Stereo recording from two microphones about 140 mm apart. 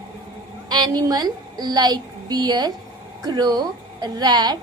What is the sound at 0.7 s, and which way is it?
A woman's voice, 30° right (ahead or behind).